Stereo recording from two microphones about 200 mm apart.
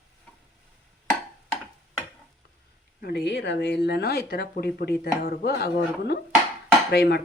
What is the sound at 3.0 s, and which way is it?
Speech, 55° left (ahead or behind).